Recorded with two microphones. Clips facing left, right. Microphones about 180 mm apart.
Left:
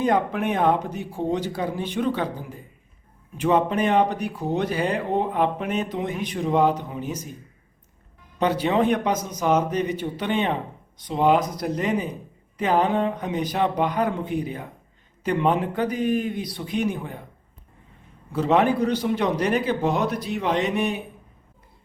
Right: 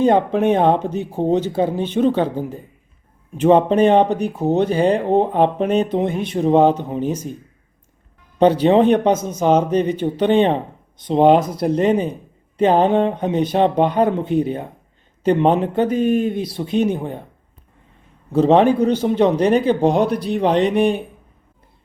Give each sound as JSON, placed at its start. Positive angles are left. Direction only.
{"t": 0.0, "sound": "a man's voice", "side_deg": -25}
{"t": 8.4, "sound": "a man's voice", "side_deg": -30}
{"t": 18.3, "sound": "a man's voice", "side_deg": -25}